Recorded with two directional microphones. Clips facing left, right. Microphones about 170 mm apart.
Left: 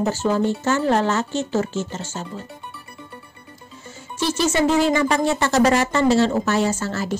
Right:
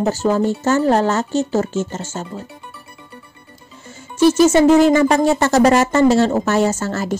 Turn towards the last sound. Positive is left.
turn(degrees=-45)  # may be behind; listen again after turning